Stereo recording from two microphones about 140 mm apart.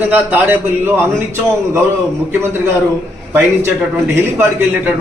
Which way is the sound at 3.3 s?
15° right (ahead or behind).